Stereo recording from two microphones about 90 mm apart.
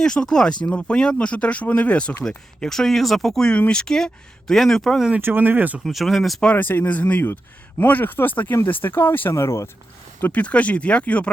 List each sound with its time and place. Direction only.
0.0 s speech: 5° left (ahead or behind)
5.1 s speech: 20° right (ahead or behind)
5.8 s speech: centre (ahead or behind)
6.5 s speech: 20° left (ahead or behind)
9.3 s speech: 35° left (ahead or behind)
10.2 s speech: 20° left (ahead or behind)